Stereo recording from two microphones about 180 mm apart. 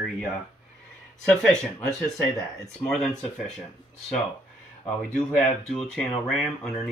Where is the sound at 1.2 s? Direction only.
5° left (ahead or behind).